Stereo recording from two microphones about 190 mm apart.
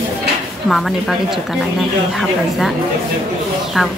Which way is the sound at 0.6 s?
Centre (ahead or behind).